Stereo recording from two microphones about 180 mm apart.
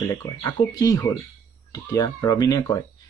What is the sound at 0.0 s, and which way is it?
Speech, 20° left (ahead or behind).